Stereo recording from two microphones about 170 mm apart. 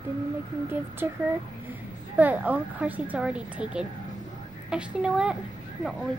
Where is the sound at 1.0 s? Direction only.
15° right (ahead or behind).